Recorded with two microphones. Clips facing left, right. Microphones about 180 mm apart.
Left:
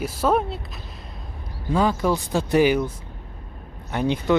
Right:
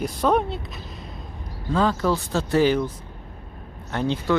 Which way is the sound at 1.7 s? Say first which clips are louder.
Left 1 dB; 15° left (ahead or behind).